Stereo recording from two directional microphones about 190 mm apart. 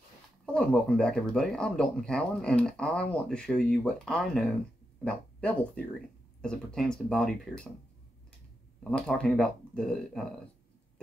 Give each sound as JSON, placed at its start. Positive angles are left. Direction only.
{"t": 0.5, "sound": "speech", "side_deg": 5}
{"t": 8.9, "sound": "speech", "side_deg": 5}